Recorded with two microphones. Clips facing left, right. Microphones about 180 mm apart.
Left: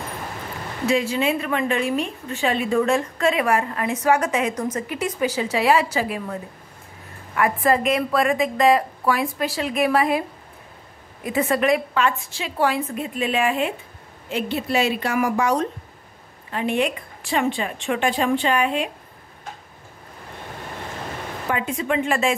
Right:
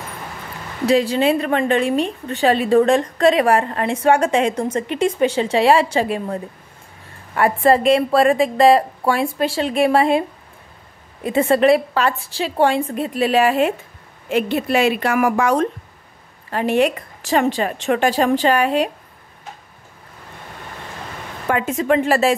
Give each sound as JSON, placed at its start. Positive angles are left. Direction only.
{"t": 0.8, "sound": "a woman's voice", "side_deg": -35}
{"t": 11.2, "sound": "a woman's voice", "side_deg": -30}
{"t": 14.3, "sound": "a woman's voice", "side_deg": -55}
{"t": 16.4, "sound": "a woman's voice", "side_deg": -45}
{"t": 21.5, "sound": "a woman's voice", "side_deg": -50}